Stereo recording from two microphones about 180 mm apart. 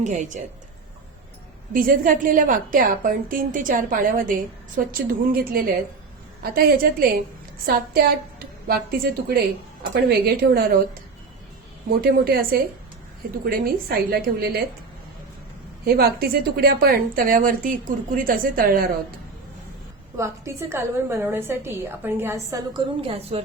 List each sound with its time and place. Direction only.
0.0 s a woman's voice: 45° right (ahead or behind)
1.7 s a woman's voice: 50° right (ahead or behind)
12.0 s a woman's voice: 55° right (ahead or behind)
15.8 s a woman's voice: 60° right (ahead or behind)
20.1 s a woman's voice: 15° right (ahead or behind)
23.0 s a woman's voice: 35° right (ahead or behind)